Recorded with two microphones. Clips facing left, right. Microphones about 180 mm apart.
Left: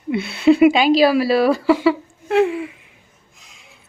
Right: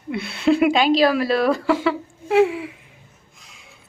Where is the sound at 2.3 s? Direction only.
10° right (ahead or behind).